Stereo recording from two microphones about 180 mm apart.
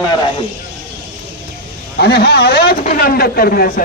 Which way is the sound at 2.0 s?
60° left (ahead or behind).